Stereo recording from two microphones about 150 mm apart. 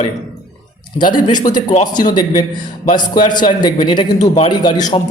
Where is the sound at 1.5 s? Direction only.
60° left (ahead or behind).